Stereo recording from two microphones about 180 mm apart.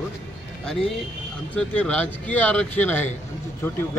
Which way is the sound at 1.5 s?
5° left (ahead or behind).